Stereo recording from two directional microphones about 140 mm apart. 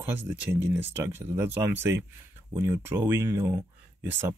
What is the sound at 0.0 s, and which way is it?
Speech, 15° right (ahead or behind).